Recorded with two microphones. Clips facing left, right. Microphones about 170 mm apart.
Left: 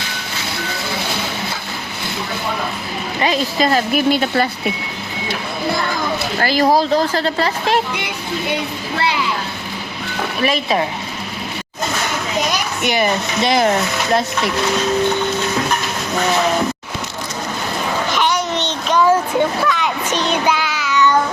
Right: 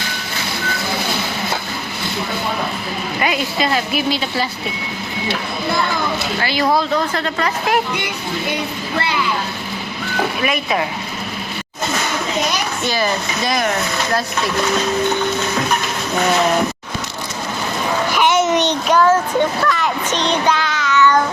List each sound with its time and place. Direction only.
3.2 s speech: 35° left (ahead or behind); by 4.4 s 50° left (ahead or behind)
6.4 s speech: 40° left (ahead or behind)
10.4 s speech: 30° left (ahead or behind)
12.8 s speech: 20° left (ahead or behind)
18.3 s a sound: 20° right (ahead or behind)
19.0 s a child's voice: 10° left (ahead or behind)
20.1 s child singing: 10° left (ahead or behind)